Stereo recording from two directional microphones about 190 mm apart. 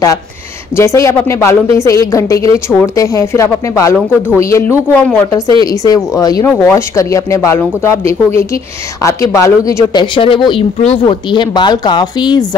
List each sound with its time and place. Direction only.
0.7 s speech: 15° left (ahead or behind)
6.1 s speech: 20° left (ahead or behind)